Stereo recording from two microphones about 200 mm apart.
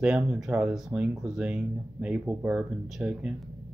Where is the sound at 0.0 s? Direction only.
Centre (ahead or behind).